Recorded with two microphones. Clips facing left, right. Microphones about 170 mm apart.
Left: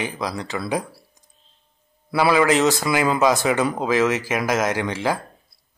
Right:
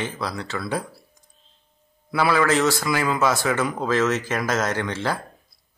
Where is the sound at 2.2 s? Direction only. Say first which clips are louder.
Left 3 dB; 15° left (ahead or behind).